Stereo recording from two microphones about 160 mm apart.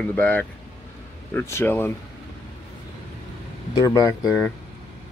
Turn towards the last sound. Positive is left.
turn(degrees=5)  # may be behind; listen again after turning